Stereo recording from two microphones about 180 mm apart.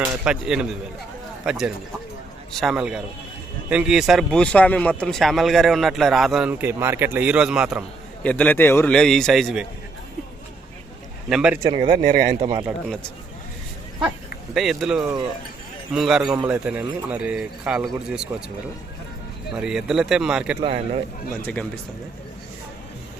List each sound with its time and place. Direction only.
0.3 s speech: 5° right (ahead or behind)
8.2 s speech: 5° left (ahead or behind)
11.3 s speech: 5° right (ahead or behind)
11.6 s speech: 25° right (ahead or behind)
14.5 s speech: centre (ahead or behind)
19.5 s speech: 5° right (ahead or behind)
20.6 s a man's voice: 35° right (ahead or behind)
21.4 s speech: 5° left (ahead or behind)